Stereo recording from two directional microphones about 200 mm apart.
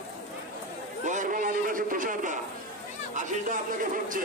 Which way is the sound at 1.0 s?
40° right (ahead or behind).